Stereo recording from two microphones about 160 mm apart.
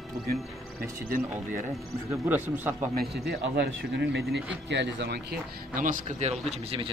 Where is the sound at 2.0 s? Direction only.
10° right (ahead or behind).